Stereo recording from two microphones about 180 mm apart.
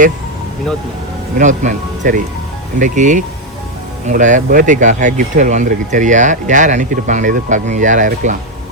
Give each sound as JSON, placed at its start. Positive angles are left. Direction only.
{"t": 1.4, "sound": "speech", "side_deg": -45}